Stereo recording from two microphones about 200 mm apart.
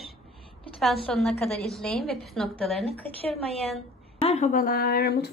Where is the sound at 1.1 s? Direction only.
5° left (ahead or behind).